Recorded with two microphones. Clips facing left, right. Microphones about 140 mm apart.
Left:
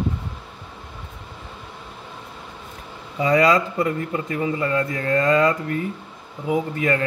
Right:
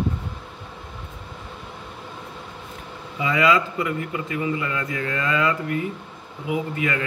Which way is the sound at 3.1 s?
40° left (ahead or behind).